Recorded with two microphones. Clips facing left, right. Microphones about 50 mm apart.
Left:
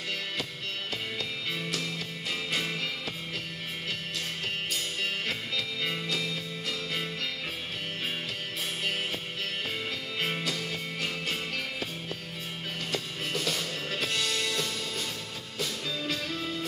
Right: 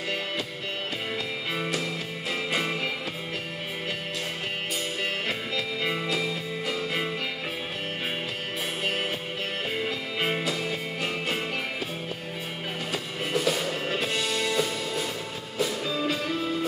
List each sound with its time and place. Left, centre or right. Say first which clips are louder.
1.5 s music: right 6 dB; right
5.8 s music: right 6 dB; centre
9.8 s music: right 4 dB; centre
12.9 s music: right 5 dB; centre